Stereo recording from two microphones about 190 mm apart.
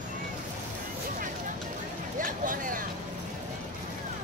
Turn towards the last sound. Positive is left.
turn(degrees=-45)  # may be behind; listen again after turning